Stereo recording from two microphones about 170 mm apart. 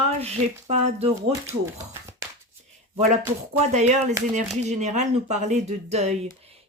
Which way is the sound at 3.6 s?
40° right (ahead or behind).